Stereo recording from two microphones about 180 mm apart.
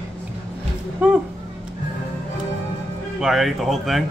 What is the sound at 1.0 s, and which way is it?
Speech, 5° right (ahead or behind).